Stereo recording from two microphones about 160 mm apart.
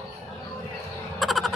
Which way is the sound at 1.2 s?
Centre (ahead or behind).